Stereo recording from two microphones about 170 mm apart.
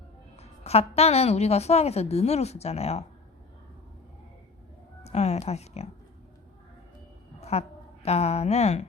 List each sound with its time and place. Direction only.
0.6 s a woman's voice: 35° left (ahead or behind)
5.0 s speech: 40° left (ahead or behind)
7.5 s a woman's voice: 40° left (ahead or behind)